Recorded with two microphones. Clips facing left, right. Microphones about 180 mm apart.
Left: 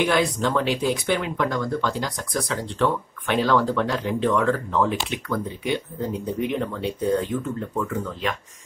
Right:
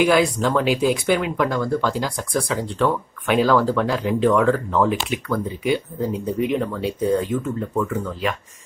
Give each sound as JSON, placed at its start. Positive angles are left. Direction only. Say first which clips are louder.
{"t": 0.1, "sound": "speech", "louder": "right 4 dB", "side_deg": -5}